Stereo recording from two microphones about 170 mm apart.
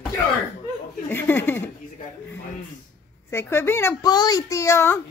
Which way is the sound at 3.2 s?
15° left (ahead or behind).